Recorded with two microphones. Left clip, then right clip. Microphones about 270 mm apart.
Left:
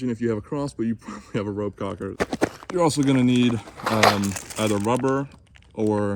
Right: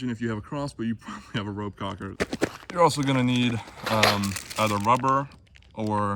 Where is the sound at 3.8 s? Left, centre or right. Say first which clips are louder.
Left 3 dB; centre.